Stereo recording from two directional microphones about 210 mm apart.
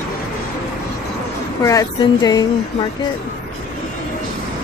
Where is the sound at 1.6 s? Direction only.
15° left (ahead or behind).